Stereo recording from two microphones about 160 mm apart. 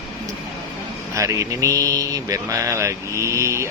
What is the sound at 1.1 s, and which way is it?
Speech, 20° right (ahead or behind).